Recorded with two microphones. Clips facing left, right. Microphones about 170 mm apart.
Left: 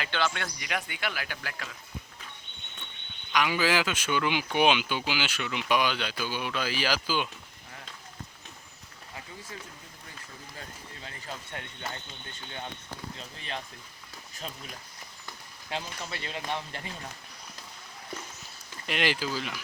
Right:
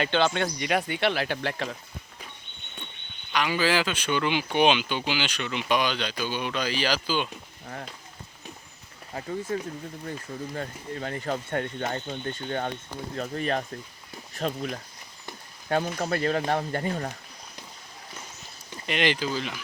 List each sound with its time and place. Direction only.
0.0 s speech: 25° right (ahead or behind)
3.3 s speech: 10° left (ahead or behind)
9.1 s speech: 40° right (ahead or behind)
18.9 s speech: 5° left (ahead or behind)